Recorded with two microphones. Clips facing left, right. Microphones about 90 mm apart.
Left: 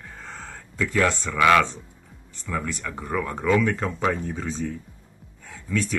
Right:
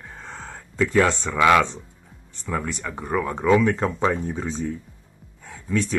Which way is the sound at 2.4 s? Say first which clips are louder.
Right 2 dB; 20° right (ahead or behind).